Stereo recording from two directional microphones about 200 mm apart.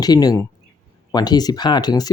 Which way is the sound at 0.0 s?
20° left (ahead or behind).